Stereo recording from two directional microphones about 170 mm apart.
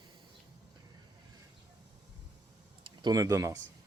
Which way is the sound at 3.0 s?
20° right (ahead or behind).